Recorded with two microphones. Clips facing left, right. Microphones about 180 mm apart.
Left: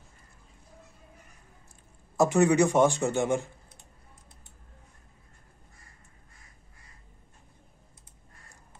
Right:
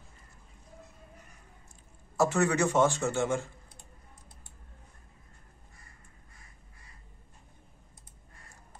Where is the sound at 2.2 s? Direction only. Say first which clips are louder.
Left 5 dB; 15° left (ahead or behind).